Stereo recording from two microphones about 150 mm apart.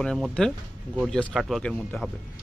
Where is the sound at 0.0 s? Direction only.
5° left (ahead or behind).